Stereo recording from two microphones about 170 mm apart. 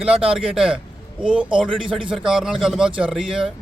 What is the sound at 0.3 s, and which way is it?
A man's voice, 5° right (ahead or behind).